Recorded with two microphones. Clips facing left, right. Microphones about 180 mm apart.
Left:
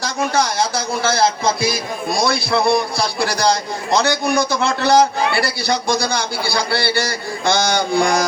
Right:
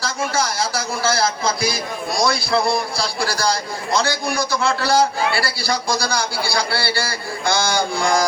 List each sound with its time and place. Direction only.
0.7 s a man's voice: 25° left (ahead or behind)